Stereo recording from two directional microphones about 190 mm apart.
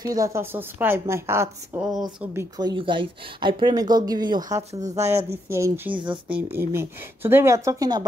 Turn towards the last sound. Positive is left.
turn(degrees=-20)  # may be behind; listen again after turning